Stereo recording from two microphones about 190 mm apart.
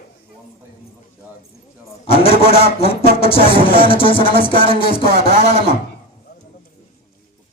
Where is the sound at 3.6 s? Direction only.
30° left (ahead or behind).